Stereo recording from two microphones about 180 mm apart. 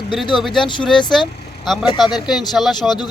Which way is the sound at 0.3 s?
Centre (ahead or behind).